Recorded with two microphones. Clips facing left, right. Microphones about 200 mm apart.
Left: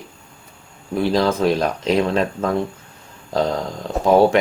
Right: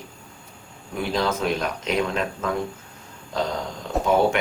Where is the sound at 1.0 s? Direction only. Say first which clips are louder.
Left 6 dB; 35° left (ahead or behind).